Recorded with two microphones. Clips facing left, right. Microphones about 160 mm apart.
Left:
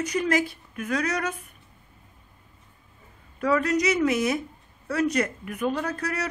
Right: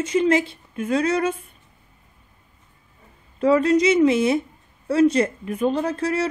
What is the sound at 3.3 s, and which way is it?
Speech, 25° right (ahead or behind).